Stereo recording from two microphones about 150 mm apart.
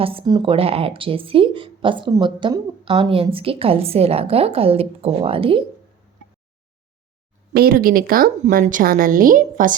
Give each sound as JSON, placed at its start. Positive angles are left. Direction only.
{"t": 0.0, "sound": "a woman's voice", "side_deg": -40}
{"t": 7.5, "sound": "speech", "side_deg": -85}
{"t": 8.6, "sound": "a woman's voice", "side_deg": -65}